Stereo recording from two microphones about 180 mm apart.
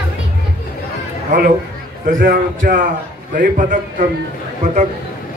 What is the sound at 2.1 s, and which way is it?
A man's voice, 50° right (ahead or behind).